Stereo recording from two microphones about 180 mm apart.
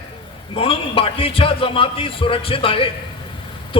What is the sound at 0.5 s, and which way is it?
A man's voice, 30° left (ahead or behind).